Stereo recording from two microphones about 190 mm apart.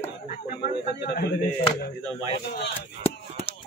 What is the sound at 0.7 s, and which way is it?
Speech, 55° left (ahead or behind).